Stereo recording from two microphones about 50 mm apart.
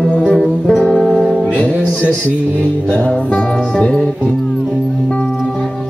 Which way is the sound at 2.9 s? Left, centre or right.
Left.